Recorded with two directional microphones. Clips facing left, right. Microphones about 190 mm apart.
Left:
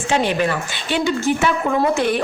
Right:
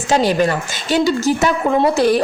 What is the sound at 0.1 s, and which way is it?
A woman's voice, 40° right (ahead or behind).